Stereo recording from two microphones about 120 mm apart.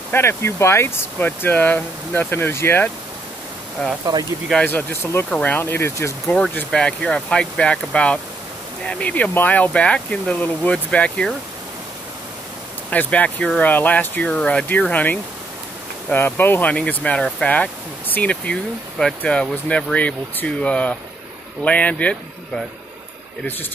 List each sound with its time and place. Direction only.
0.1 s speech: 20° left (ahead or behind)
4.0 s speech: 30° right (ahead or behind)
4.6 s speech: 15° left (ahead or behind)
6.2 s speech: 5° left (ahead or behind)
12.9 s speech: 10° left (ahead or behind)